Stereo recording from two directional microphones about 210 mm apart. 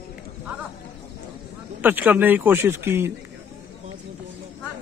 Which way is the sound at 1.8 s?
10° right (ahead or behind).